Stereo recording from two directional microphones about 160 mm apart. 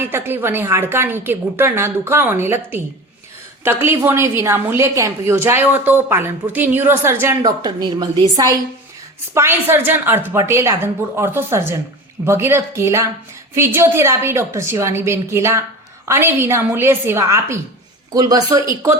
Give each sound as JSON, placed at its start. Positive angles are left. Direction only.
{"t": 0.1, "sound": "a woman's voice", "side_deg": -15}
{"t": 7.6, "sound": "a woman's voice", "side_deg": -25}